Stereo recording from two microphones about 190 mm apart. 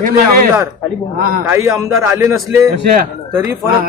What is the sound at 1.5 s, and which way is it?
A man's voice, 15° right (ahead or behind).